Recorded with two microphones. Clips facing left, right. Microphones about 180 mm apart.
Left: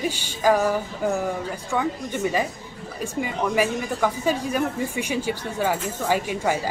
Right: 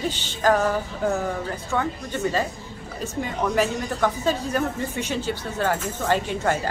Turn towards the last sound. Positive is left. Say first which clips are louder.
# even
turn(degrees=10)  # may be behind; listen again after turning